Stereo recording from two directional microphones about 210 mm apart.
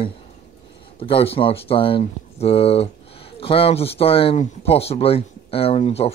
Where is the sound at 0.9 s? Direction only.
25° left (ahead or behind).